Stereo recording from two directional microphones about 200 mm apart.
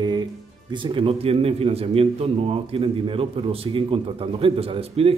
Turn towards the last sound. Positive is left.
turn(degrees=-30)  # may be behind; listen again after turning